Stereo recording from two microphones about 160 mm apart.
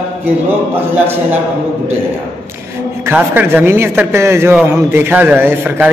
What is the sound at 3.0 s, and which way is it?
Speech, 10° right (ahead or behind).